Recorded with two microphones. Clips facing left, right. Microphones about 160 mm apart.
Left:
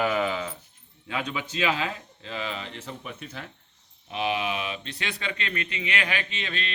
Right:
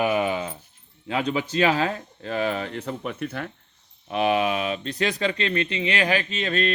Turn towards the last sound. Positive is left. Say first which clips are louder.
# right 10 dB
turn(degrees=-45)  # may be behind; listen again after turning